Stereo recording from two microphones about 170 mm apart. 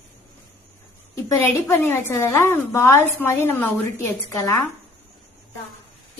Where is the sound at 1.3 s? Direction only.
15° left (ahead or behind).